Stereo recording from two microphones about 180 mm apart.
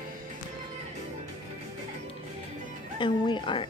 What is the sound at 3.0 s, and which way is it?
Speech, 25° left (ahead or behind).